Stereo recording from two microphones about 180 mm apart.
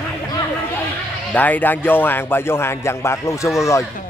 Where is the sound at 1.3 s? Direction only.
10° left (ahead or behind).